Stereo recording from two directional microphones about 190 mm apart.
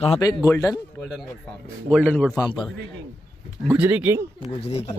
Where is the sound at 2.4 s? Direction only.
25° left (ahead or behind).